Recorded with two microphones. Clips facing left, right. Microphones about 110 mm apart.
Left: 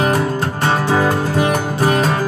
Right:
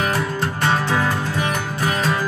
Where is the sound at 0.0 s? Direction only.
35° left (ahead or behind).